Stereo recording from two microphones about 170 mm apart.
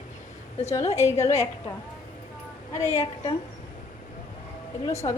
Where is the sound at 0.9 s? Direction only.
15° left (ahead or behind).